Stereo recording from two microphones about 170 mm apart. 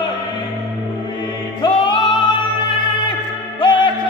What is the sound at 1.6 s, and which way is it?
Music, 25° left (ahead or behind).